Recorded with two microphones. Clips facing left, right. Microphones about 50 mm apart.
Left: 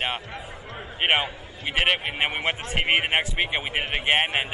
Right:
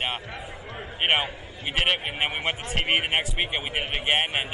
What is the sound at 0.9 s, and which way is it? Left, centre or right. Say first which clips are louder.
A man's voice: left 1 dB; centre.